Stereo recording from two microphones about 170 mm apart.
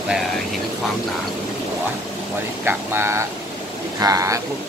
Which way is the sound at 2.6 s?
15° right (ahead or behind).